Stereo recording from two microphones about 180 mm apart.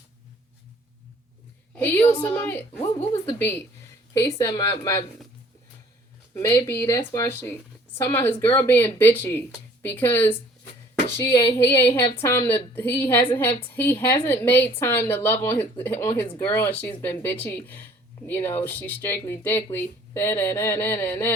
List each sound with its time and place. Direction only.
1.7 s a woman's voice: 10° left (ahead or behind)
6.3 s speech: 10° left (ahead or behind)
11.3 s a woman's voice: 30° left (ahead or behind)
11.9 s speech: 10° left (ahead or behind)